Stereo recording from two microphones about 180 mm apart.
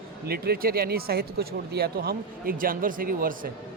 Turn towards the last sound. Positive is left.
turn(degrees=-55)  # may be behind; listen again after turning